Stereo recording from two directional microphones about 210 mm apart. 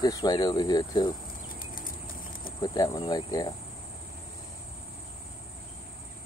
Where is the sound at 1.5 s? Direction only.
40° left (ahead or behind).